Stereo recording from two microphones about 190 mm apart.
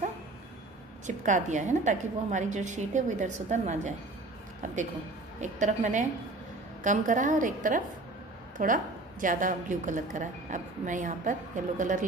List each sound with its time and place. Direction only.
1.0 s a woman's voice: 40° right (ahead or behind)
5.4 s a woman's voice: 40° right (ahead or behind)